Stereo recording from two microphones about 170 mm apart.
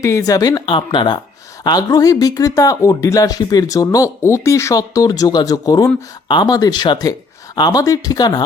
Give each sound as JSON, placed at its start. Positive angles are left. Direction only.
{"t": 0.0, "sound": "speech", "side_deg": 20}